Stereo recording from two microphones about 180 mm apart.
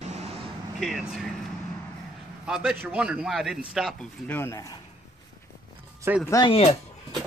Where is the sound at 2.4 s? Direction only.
5° right (ahead or behind); by 4.7 s 15° left (ahead or behind).